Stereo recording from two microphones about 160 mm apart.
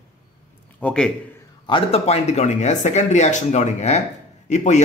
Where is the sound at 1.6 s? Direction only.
35° left (ahead or behind).